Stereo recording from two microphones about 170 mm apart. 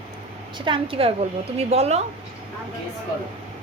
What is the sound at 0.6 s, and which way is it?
A woman's voice, 30° right (ahead or behind).